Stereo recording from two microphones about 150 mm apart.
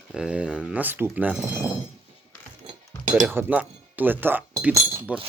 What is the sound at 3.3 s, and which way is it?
Speech, 15° right (ahead or behind).